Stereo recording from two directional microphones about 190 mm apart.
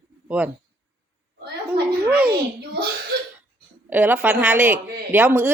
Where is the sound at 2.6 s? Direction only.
55° right (ahead or behind).